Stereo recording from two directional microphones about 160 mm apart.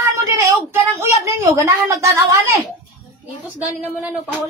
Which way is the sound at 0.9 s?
15° right (ahead or behind).